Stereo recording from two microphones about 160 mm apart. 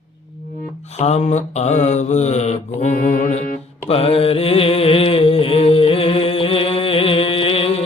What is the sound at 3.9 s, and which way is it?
Mantra, 40° left (ahead or behind).